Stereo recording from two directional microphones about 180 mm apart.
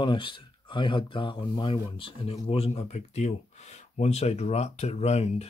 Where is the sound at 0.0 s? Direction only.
25° left (ahead or behind).